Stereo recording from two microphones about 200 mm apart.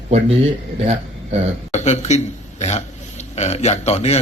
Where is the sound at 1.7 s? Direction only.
35° left (ahead or behind).